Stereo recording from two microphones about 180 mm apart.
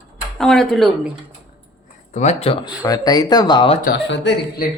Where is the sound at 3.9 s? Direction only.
75° left (ahead or behind).